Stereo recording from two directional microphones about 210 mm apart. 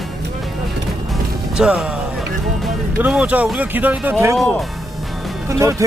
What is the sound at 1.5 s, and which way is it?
Speech, 5° right (ahead or behind).